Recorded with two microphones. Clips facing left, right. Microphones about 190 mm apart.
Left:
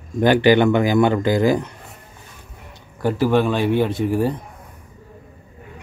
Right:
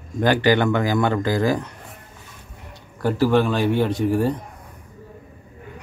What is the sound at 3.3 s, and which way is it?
Speech, 5° left (ahead or behind).